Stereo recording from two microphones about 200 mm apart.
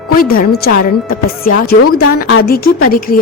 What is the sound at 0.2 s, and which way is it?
A woman's voice, 45° left (ahead or behind).